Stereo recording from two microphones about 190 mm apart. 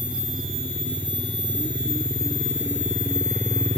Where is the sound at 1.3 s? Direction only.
25° left (ahead or behind).